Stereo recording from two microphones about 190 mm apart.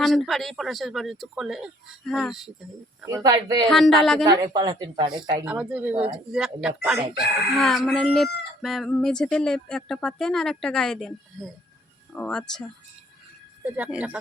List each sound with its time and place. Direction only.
0.0 s speech: centre (ahead or behind)
3.2 s speech: 20° right (ahead or behind)
3.7 s speech: centre (ahead or behind)
4.2 s speech: 20° right (ahead or behind)
5.5 s speech: 5° right (ahead or behind)
13.7 s speech: 10° right (ahead or behind)